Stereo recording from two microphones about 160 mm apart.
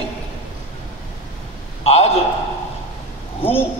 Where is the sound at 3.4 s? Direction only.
35° left (ahead or behind).